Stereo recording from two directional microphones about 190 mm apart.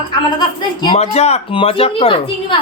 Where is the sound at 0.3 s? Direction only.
20° left (ahead or behind).